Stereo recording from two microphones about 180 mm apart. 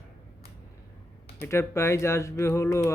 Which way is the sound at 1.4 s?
15° left (ahead or behind).